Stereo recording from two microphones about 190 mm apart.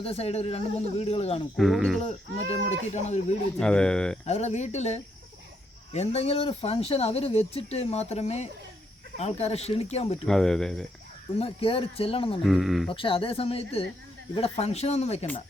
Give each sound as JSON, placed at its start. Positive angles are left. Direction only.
{"t": 0.0, "sound": "speech", "side_deg": 30}
{"t": 1.5, "sound": "speech", "side_deg": 0}
{"t": 2.0, "sound": "speech", "side_deg": 35}
{"t": 3.6, "sound": "speech", "side_deg": 5}
{"t": 4.3, "sound": "speech", "side_deg": 35}
{"t": 10.2, "sound": "speech", "side_deg": 0}
{"t": 11.3, "sound": "speech", "side_deg": 30}
{"t": 12.5, "sound": "speech", "side_deg": 0}
{"t": 12.9, "sound": "speech", "side_deg": 30}